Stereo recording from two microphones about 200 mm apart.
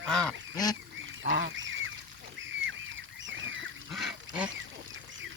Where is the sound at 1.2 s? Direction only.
60° right (ahead or behind).